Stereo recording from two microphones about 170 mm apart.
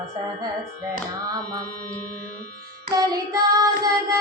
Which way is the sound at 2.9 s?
20° right (ahead or behind).